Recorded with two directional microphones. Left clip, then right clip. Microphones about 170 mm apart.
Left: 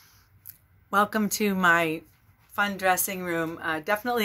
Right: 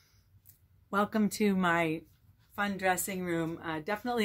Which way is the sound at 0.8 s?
15° right (ahead or behind).